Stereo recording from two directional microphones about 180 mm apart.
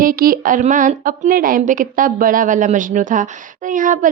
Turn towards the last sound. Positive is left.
turn(degrees=-45)  # may be behind; listen again after turning